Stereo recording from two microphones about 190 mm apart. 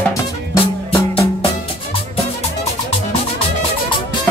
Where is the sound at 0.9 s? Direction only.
30° left (ahead or behind).